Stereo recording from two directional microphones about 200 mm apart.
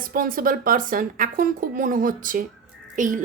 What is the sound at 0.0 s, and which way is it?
A woman's voice, 45° right (ahead or behind).